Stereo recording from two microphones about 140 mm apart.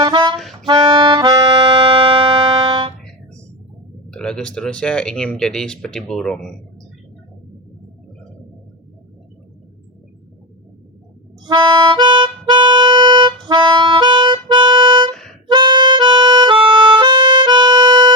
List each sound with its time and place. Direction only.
0.0 s music: 30° right (ahead or behind)
2.5 s a sound: 30° right (ahead or behind)
4.1 s speech: 5° left (ahead or behind)
11.4 s harmonica: 30° right (ahead or behind)
15.1 s harmonica: 5° left (ahead or behind)
15.4 s harmonica: 30° right (ahead or behind)